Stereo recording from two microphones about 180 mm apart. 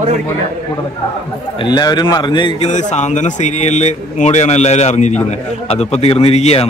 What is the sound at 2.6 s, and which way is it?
A man's voice, 40° left (ahead or behind).